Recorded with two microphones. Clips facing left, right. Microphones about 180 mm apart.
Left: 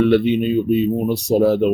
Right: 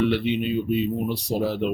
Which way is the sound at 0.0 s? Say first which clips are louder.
Left 7 dB; 50° left (ahead or behind).